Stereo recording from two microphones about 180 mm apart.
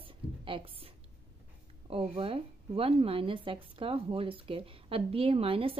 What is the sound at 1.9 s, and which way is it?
Speech, 30° right (ahead or behind).